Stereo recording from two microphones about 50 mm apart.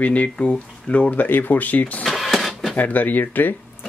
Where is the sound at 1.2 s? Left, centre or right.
Left.